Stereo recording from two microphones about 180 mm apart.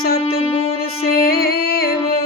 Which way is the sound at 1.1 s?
55° left (ahead or behind).